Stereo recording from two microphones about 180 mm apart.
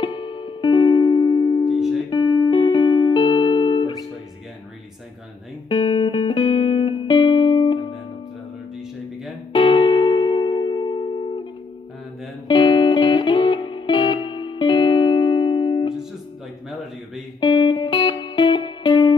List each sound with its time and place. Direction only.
0.0 s music: 25° left (ahead or behind)
5.7 s music: 25° left (ahead or behind)
9.5 s music: 25° left (ahead or behind)
12.4 s music: 25° left (ahead or behind)
17.4 s music: 25° left (ahead or behind)